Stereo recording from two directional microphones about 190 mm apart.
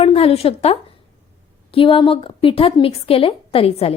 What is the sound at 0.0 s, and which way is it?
A woman's voice, 30° left (ahead or behind).